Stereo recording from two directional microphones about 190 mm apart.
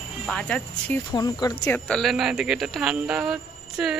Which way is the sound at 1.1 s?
20° left (ahead or behind).